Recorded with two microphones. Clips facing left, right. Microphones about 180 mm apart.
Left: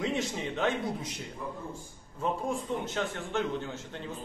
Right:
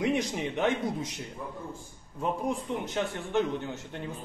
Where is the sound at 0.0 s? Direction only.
15° right (ahead or behind).